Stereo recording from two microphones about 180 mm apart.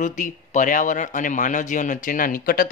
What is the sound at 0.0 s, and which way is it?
Speech, 45° left (ahead or behind).